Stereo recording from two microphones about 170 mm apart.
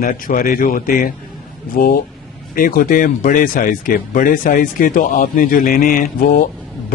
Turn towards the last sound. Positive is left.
turn(degrees=55)  # may be behind; listen again after turning